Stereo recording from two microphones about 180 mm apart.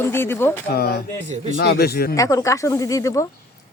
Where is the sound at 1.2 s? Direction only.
40° right (ahead or behind).